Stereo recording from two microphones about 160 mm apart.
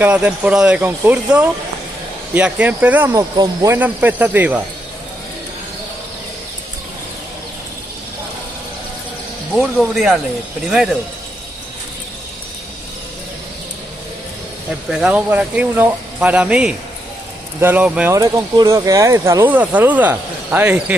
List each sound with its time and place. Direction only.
0.0 s speech: 5° right (ahead or behind)
9.8 s speech: centre (ahead or behind)
14.9 s speech: 5° right (ahead or behind)
18.1 s speech: 20° right (ahead or behind)